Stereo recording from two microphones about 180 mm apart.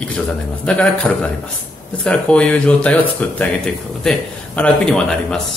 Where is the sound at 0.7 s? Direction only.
5° left (ahead or behind).